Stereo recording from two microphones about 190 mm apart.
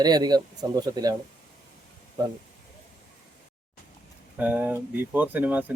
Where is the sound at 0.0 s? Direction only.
20° right (ahead or behind).